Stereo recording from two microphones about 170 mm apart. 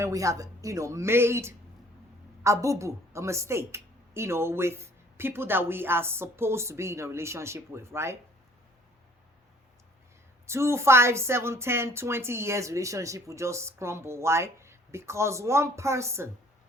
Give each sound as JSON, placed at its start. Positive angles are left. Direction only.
{"t": 0.0, "sound": "a woman's voice", "side_deg": -20}
{"t": 10.4, "sound": "a woman's voice", "side_deg": -15}